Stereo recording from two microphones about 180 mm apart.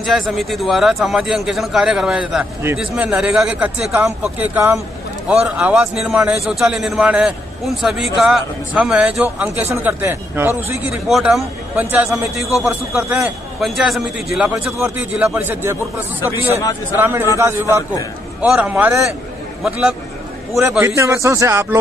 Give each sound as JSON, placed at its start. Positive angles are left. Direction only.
{"t": 0.0, "sound": "a man's voice", "side_deg": 0}
{"t": 11.1, "sound": "a man's voice", "side_deg": 0}
{"t": 16.9, "sound": "a man's voice", "side_deg": -10}
{"t": 20.8, "sound": "a man's voice", "side_deg": -15}